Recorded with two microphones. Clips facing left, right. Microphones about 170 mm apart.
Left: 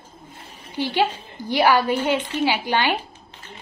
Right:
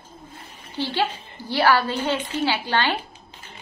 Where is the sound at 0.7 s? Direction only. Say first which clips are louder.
Left 3 dB; 15° left (ahead or behind).